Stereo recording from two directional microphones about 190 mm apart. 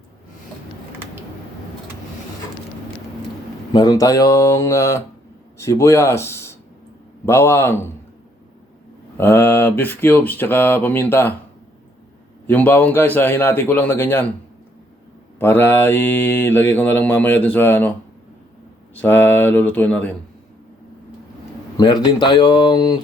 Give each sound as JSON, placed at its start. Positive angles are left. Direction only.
{"t": 3.7, "sound": "mantra", "side_deg": 20}
{"t": 5.5, "sound": "a man's voice", "side_deg": 15}
{"t": 7.3, "sound": "mantra", "side_deg": 15}
{"t": 9.1, "sound": "mantra", "side_deg": 10}
{"t": 12.5, "sound": "mantra", "side_deg": 10}
{"t": 15.4, "sound": "mantra", "side_deg": 10}
{"t": 18.9, "sound": "mantra", "side_deg": 10}
{"t": 21.8, "sound": "speech", "side_deg": 25}